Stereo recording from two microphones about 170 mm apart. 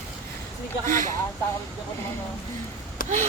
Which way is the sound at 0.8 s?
50° right (ahead or behind).